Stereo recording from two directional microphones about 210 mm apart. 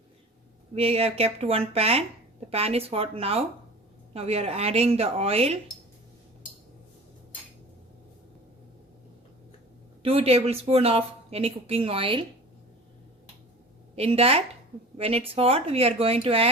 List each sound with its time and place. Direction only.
0.8 s speech: 30° right (ahead or behind)
10.0 s speech: 25° right (ahead or behind)
13.9 s speech: 30° right (ahead or behind)